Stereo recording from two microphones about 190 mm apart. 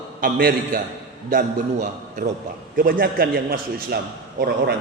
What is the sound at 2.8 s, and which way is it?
A man's voice, 50° right (ahead or behind).